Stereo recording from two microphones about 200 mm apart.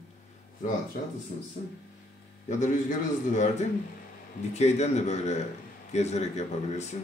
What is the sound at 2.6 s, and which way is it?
A man's voice, 35° left (ahead or behind).